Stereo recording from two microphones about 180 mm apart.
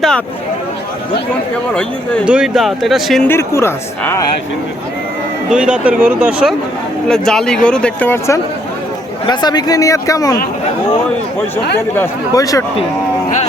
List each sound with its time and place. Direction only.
2.2 s speech: 5° right (ahead or behind)
3.2 s speech: 15° left (ahead or behind)
5.5 s speech: 5° right (ahead or behind)
7.1 s speech: 5° left (ahead or behind)
9.2 s speech: 25° left (ahead or behind)
11.9 s speech: 20° left (ahead or behind)